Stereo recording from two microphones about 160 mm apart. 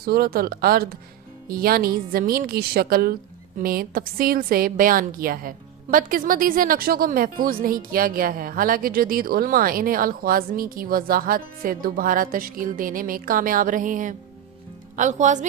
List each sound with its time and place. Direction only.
0.0 s a woman's voice: 70° right (ahead or behind); by 15.4 s 50° right (ahead or behind)